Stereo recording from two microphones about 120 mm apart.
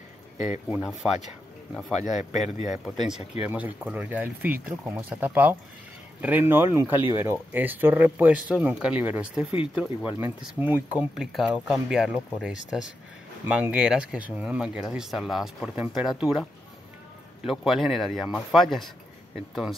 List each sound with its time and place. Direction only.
1.7 s speech: centre (ahead or behind)
3.4 s speech: 15° right (ahead or behind)
17.5 s speech: centre (ahead or behind)